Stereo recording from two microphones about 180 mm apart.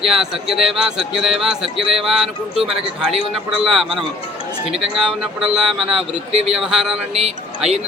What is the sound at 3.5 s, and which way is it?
Speech, centre (ahead or behind).